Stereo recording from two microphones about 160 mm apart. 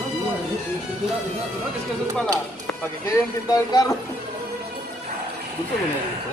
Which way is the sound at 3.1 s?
20° left (ahead or behind).